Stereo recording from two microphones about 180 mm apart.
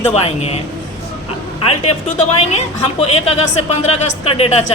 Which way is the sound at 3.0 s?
35° left (ahead or behind).